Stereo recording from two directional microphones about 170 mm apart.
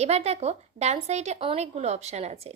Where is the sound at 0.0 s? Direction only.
40° right (ahead or behind).